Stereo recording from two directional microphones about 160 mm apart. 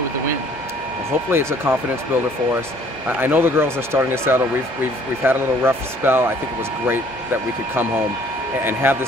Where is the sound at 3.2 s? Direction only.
15° right (ahead or behind).